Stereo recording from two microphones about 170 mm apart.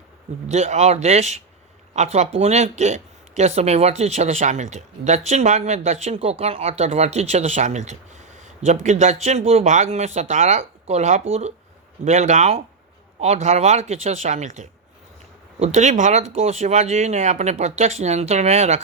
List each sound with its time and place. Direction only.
0.4 s speech: 40° right (ahead or behind)